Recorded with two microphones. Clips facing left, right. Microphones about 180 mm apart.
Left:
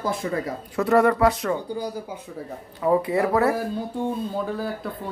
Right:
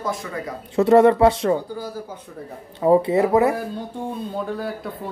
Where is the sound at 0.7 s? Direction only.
25° right (ahead or behind).